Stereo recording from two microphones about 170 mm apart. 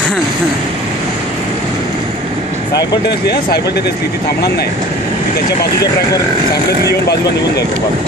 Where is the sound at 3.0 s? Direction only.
75° left (ahead or behind).